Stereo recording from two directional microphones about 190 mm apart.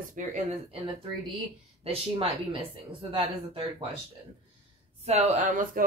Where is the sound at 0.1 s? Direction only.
40° right (ahead or behind).